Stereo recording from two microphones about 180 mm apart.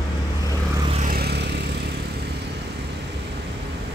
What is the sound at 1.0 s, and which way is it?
Vehicle, 60° right (ahead or behind).